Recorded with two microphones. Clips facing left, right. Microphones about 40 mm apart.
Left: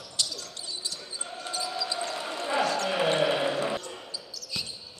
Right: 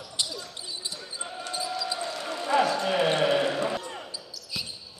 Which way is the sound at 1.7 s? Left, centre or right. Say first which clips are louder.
Even; centre.